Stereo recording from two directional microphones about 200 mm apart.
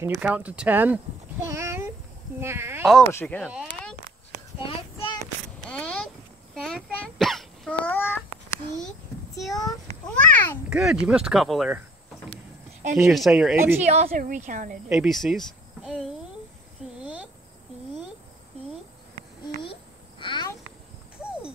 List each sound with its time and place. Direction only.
0.0 s speech: 10° right (ahead or behind)
3.1 s speech: 10° left (ahead or behind)
4.6 s child singing: 25° left (ahead or behind)
5.6 s a sound: 5° left (ahead or behind)
6.5 s cough: centre (ahead or behind)
9.6 s a sound: 20° left (ahead or behind)
10.7 s speech: centre (ahead or behind)
13.1 s speech: centre (ahead or behind)
13.8 s a woman's voice: 35° right (ahead or behind)
14.9 s speech: centre (ahead or behind)
19.6 s a sound: 25° left (ahead or behind)